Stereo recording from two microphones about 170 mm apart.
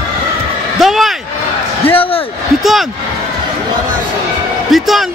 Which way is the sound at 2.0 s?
35° left (ahead or behind).